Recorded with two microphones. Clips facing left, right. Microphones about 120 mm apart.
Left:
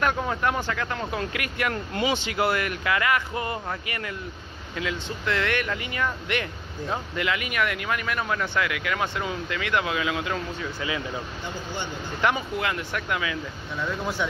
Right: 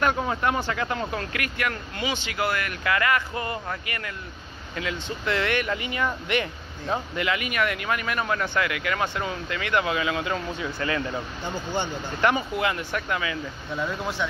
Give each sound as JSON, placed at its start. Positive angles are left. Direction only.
{"t": 0.0, "sound": "speech", "side_deg": -10}
{"t": 1.1, "sound": "speech", "side_deg": 20}
{"t": 4.7, "sound": "speech", "side_deg": -5}
{"t": 10.8, "sound": "speech", "side_deg": 10}
{"t": 12.2, "sound": "speech", "side_deg": 0}